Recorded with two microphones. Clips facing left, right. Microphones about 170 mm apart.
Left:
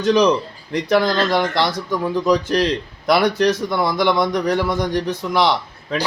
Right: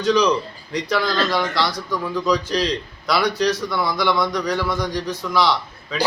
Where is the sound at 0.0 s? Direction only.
50° left (ahead or behind).